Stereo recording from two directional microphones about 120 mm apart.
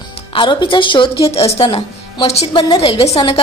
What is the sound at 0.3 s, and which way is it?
Speech, 45° left (ahead or behind).